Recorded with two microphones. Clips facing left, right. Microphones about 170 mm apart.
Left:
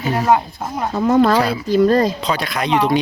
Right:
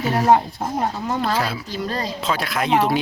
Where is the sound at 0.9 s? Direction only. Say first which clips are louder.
Left 10 dB; 90° left.